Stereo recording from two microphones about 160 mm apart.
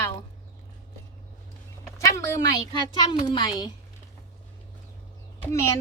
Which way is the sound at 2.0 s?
20° left (ahead or behind).